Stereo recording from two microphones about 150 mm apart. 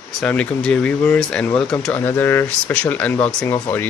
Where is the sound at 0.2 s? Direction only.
10° left (ahead or behind).